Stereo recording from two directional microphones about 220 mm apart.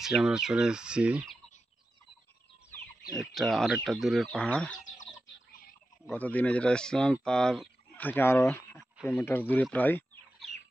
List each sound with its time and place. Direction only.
0.0 s speech: centre (ahead or behind)
3.3 s speech: centre (ahead or behind)
6.0 s speech: 5° left (ahead or behind)